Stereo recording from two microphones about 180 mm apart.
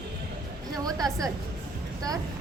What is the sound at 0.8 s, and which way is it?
Speech, 20° right (ahead or behind).